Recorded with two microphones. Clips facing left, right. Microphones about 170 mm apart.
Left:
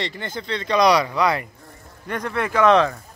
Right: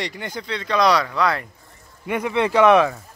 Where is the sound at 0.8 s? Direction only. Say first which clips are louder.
Left 1 dB; 15° left (ahead or behind).